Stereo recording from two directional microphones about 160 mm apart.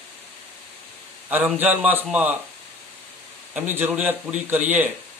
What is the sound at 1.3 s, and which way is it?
A man's voice, 10° right (ahead or behind).